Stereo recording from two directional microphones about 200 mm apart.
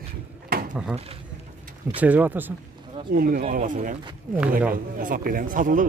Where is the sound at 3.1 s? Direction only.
45° right (ahead or behind).